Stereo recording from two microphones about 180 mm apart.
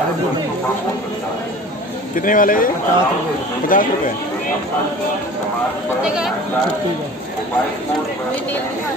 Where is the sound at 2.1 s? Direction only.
50° left (ahead or behind).